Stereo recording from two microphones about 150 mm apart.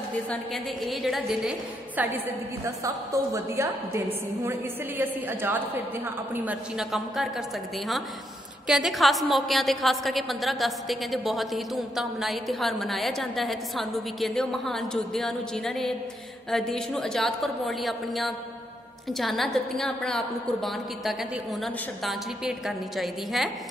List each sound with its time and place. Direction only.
0.8 s a woman's voice: centre (ahead or behind)
2.0 s a woman's voice: 10° right (ahead or behind)
8.6 s a woman's voice: centre (ahead or behind)